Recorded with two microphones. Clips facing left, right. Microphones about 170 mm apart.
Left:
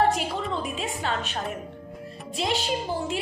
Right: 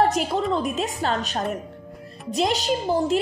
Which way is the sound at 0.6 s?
40° right (ahead or behind).